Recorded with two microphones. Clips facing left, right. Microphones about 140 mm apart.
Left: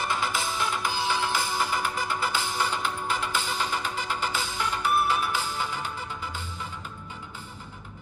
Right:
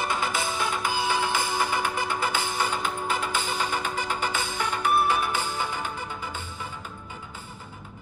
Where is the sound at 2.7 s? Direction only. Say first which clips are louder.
Right 1 dB; 50° right (ahead or behind).